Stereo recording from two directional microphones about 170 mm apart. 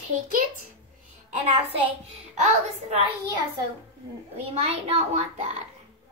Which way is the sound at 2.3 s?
45° right (ahead or behind).